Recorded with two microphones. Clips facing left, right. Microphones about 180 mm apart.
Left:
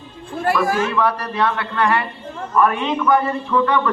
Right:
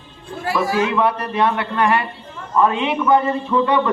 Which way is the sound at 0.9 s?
20° right (ahead or behind).